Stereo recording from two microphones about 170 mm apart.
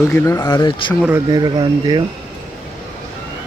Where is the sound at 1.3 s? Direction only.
25° right (ahead or behind).